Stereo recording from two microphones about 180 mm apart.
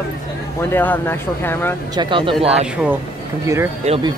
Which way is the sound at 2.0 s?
30° right (ahead or behind).